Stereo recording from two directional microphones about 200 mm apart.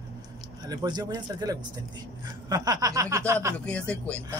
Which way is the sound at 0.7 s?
20° right (ahead or behind).